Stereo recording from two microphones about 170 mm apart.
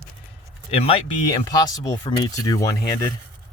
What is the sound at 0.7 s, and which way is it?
Speech, 35° left (ahead or behind).